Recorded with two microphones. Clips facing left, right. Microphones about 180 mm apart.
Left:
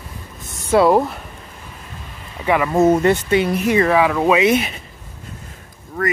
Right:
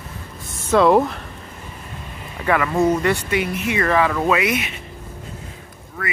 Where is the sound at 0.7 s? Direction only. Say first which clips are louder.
Left 1 dB; 5° left (ahead or behind).